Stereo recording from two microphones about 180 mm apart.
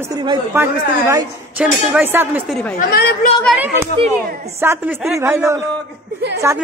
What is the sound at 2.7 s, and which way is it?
Speech, 45° left (ahead or behind).